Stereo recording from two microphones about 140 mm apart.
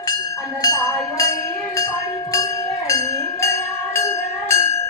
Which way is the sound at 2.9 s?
25° left (ahead or behind).